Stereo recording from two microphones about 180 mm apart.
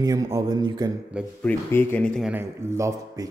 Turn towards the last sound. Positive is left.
turn(degrees=-20)  # may be behind; listen again after turning